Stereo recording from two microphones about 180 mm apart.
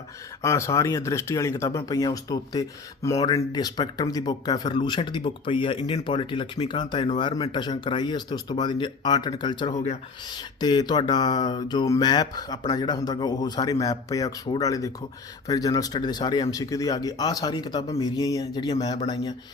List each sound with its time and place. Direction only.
0.4 s speech: 15° left (ahead or behind)